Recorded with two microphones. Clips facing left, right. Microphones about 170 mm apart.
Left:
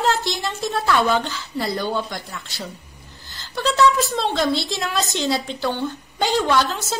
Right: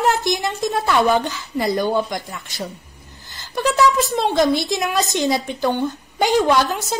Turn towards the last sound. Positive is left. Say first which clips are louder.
# right 2 dB
turn(degrees=-15)  # may be behind; listen again after turning